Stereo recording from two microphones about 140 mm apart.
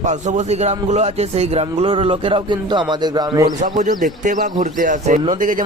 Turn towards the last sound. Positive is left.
turn(degrees=-65)  # may be behind; listen again after turning